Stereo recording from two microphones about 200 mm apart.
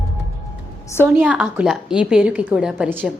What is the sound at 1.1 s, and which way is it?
A woman's voice, 5° right (ahead or behind).